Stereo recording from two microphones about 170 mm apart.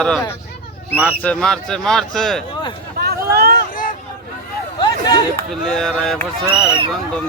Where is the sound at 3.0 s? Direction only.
70° right (ahead or behind).